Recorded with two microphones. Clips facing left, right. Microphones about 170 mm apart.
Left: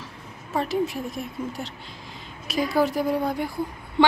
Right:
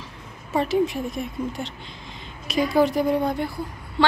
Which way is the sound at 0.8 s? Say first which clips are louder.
Right 3 dB; 5° left (ahead or behind).